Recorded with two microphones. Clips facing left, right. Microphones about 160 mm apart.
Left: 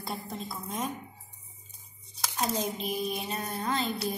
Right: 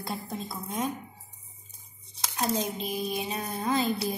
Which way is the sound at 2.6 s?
Centre (ahead or behind).